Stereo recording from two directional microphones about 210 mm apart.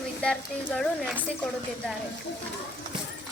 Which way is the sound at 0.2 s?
5° left (ahead or behind).